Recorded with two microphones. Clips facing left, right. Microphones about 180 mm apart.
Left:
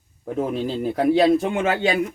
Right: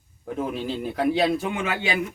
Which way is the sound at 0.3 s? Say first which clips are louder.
Left 4 dB; 45° left (ahead or behind).